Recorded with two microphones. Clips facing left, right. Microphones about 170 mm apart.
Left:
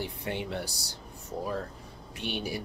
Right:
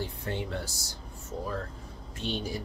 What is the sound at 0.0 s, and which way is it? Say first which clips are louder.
Speech: even; 15° left (ahead or behind).